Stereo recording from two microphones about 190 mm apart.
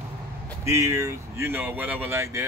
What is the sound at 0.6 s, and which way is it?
Speech, 15° right (ahead or behind).